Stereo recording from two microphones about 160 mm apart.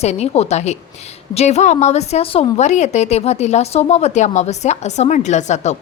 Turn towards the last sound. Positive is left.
turn(degrees=45)  # may be behind; listen again after turning